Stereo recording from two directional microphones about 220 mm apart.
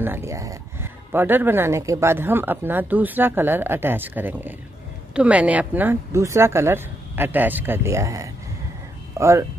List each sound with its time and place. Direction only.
0.0 s speech: 10° right (ahead or behind)